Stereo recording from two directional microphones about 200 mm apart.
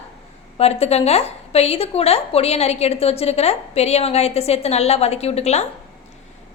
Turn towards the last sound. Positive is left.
turn(degrees=30)  # may be behind; listen again after turning